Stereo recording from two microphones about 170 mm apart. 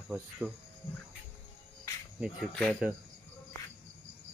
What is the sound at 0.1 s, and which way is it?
Speech, 10° right (ahead or behind).